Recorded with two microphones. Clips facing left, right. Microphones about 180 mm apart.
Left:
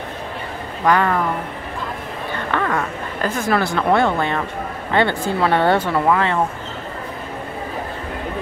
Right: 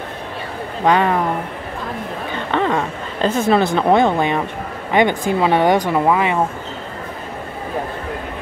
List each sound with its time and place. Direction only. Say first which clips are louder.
0.8 s a woman's voice: right 2 dB; 20° right (ahead or behind)
2.5 s a woman's voice: right 3 dB; 20° right (ahead or behind)